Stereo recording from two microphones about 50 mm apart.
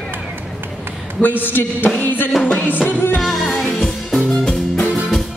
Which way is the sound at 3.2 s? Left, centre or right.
Centre.